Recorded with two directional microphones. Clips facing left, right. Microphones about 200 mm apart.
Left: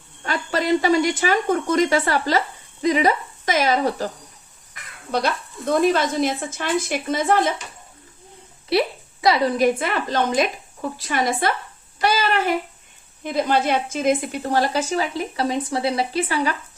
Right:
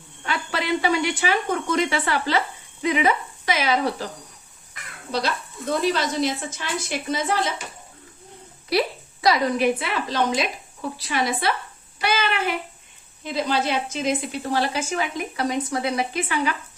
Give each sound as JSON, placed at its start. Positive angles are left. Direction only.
{"t": 0.3, "sound": "a woman's voice", "side_deg": 40}
{"t": 5.8, "sound": "a woman's voice", "side_deg": 50}
{"t": 9.2, "sound": "a woman's voice", "side_deg": 25}
{"t": 9.6, "sound": "a woman's voice", "side_deg": 50}
{"t": 11.9, "sound": "a sound", "side_deg": 40}
{"t": 13.2, "sound": "a woman's voice", "side_deg": 55}